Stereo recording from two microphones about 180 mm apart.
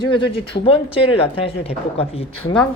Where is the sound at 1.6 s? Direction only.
35° left (ahead or behind).